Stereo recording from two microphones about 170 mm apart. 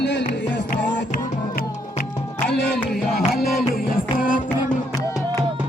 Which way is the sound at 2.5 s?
80° left.